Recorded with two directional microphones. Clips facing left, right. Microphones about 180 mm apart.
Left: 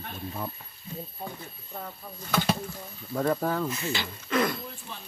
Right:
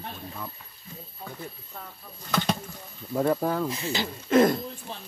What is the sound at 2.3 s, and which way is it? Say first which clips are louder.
Speech: even; 5° left (ahead or behind).